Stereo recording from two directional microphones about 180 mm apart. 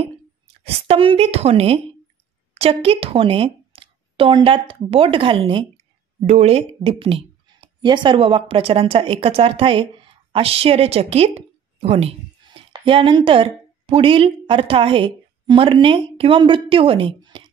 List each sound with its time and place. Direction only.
0.7 s a woman's voice: 30° right (ahead or behind)